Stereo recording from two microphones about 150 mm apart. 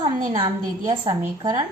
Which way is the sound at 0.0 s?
30° right (ahead or behind).